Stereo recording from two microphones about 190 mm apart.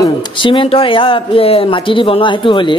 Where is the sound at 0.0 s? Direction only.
25° left (ahead or behind).